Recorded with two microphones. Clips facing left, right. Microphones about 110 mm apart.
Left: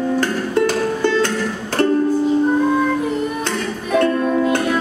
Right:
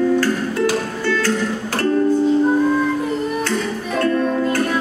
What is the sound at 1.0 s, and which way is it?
Music, 20° left (ahead or behind).